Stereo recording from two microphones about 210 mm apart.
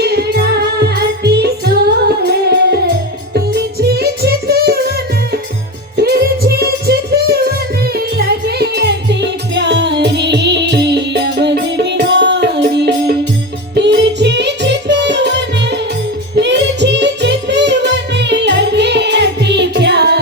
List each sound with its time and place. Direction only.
0.0 s music: 50° right (ahead or behind)